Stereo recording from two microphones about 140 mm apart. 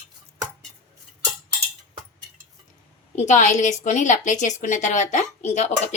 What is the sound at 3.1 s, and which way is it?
A woman's voice, 55° left (ahead or behind).